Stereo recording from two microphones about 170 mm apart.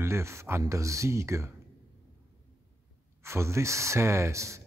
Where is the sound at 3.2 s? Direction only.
15° right (ahead or behind).